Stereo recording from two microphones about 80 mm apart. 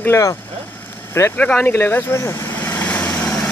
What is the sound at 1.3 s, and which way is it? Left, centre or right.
Speech, centre.